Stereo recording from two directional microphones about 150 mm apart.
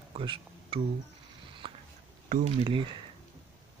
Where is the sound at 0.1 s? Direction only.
35° right (ahead or behind).